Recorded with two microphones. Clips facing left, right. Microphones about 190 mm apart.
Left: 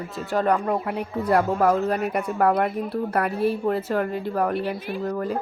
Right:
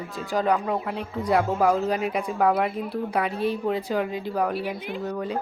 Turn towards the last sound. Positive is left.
turn(degrees=5)  # may be behind; listen again after turning